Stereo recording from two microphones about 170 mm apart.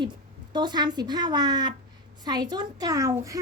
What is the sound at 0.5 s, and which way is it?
A child's voice, 25° right (ahead or behind).